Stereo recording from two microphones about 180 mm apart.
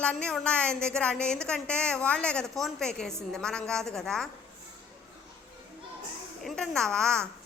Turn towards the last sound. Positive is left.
turn(degrees=5)  # may be behind; listen again after turning